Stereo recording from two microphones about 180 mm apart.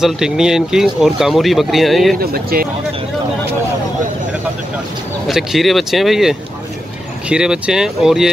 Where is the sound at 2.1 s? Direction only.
55° right (ahead or behind).